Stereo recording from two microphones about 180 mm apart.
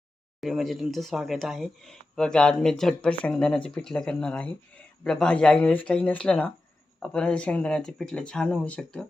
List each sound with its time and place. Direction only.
0.4 s speech: centre (ahead or behind)